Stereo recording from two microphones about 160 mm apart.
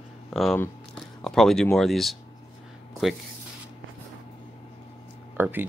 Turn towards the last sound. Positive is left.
turn(degrees=-15)  # may be behind; listen again after turning